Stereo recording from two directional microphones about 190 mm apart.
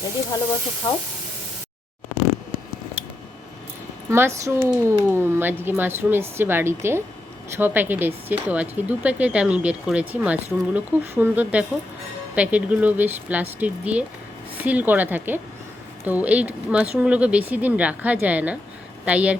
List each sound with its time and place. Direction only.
0.8 s sizzle: 25° left (ahead or behind)
3.0 s a sound: 10° right (ahead or behind)
4.1 s speech: 15° right (ahead or behind)